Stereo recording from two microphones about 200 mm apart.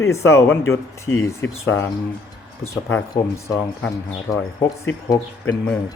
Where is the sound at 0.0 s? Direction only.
15° left (ahead or behind).